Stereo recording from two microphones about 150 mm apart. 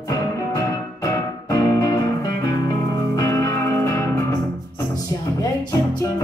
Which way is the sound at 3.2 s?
20° left (ahead or behind).